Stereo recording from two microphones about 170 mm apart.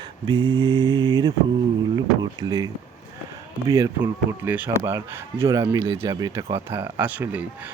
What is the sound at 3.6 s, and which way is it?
Speech, 20° right (ahead or behind).